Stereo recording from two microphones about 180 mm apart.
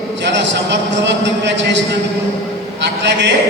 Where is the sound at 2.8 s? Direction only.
80° right.